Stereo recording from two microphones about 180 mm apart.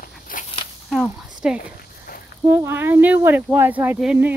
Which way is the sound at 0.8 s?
Centre (ahead or behind).